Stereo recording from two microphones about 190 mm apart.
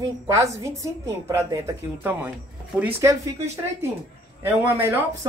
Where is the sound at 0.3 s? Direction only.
15° right (ahead or behind).